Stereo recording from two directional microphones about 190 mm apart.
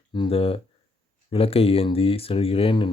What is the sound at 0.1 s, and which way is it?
Speech, 30° left (ahead or behind).